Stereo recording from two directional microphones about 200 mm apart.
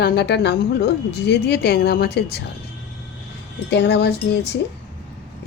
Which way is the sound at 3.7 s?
55° left (ahead or behind).